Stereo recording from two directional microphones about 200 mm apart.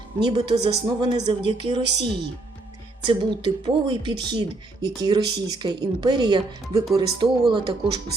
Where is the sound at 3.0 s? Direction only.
25° right (ahead or behind).